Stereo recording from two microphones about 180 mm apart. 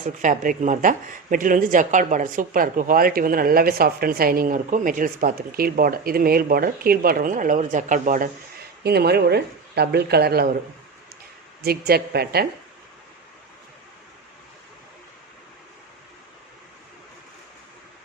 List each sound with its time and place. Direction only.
0.0 s speech: 45° right (ahead or behind)
8.8 s speech: 65° right (ahead or behind)
11.6 s speech: 60° right (ahead or behind)